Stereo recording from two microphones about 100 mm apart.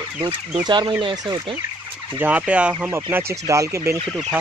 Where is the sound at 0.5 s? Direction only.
45° right (ahead or behind).